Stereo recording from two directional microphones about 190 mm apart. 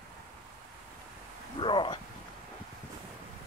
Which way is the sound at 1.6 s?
25° left (ahead or behind).